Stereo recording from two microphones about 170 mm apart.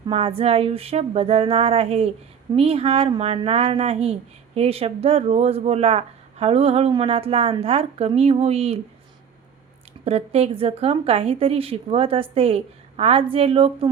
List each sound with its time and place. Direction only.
0.1 s speech: 35° right (ahead or behind)
10.0 s speech: 40° right (ahead or behind)